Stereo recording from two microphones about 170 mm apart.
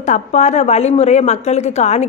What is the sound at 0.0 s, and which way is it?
A woman's voice, 45° left (ahead or behind).